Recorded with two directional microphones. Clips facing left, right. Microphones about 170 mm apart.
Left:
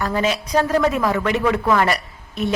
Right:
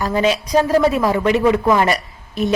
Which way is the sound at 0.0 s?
15° right (ahead or behind).